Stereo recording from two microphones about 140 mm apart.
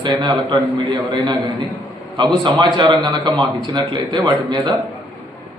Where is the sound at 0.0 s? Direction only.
35° right (ahead or behind).